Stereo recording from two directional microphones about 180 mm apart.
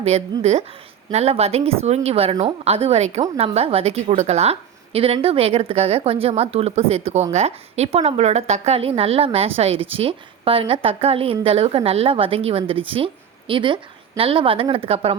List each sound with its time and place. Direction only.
0.0 s a woman's voice: 35° right (ahead or behind)